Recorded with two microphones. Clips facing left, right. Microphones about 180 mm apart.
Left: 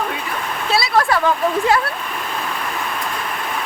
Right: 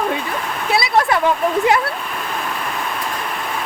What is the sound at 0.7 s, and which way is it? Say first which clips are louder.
Speech: right 1 dB; 20° right (ahead or behind).